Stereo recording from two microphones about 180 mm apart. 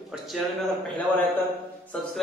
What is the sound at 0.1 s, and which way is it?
A man's voice, centre (ahead or behind).